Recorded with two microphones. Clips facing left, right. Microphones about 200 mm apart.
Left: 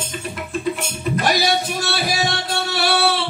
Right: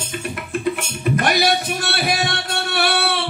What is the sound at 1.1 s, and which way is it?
Music, 60° right (ahead or behind).